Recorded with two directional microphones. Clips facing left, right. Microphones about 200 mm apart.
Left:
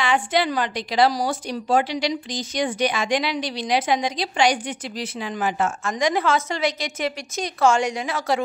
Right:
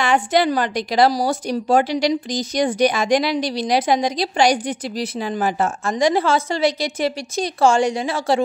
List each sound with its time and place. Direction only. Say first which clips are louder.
0.0 s a woman's voice: right 4 dB; 45° right (ahead or behind)